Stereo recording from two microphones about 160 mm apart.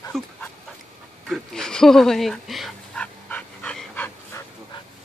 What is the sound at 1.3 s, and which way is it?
Dog, 5° left (ahead or behind).